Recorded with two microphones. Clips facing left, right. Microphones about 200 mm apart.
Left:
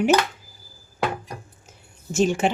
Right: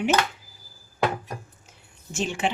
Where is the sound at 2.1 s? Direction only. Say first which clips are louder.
Left 8 dB; 45° left (ahead or behind).